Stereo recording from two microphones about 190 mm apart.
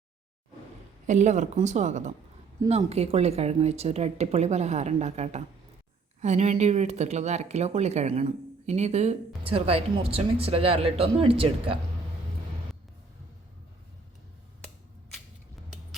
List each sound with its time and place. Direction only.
1.0 s speech: 40° right (ahead or behind)